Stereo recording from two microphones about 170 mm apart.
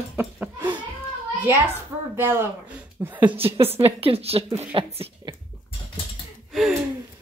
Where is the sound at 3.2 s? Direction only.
30° right (ahead or behind).